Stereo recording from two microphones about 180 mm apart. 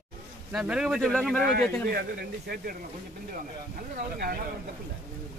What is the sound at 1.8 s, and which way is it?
Speech, 60° right (ahead or behind).